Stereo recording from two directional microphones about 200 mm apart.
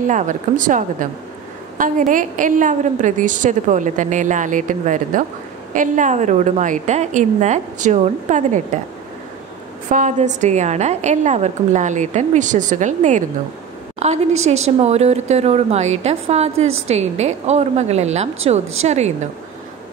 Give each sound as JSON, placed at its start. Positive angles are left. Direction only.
{"t": 0.1, "sound": "a woman's voice", "side_deg": -40}
{"t": 9.8, "sound": "a woman's voice", "side_deg": -40}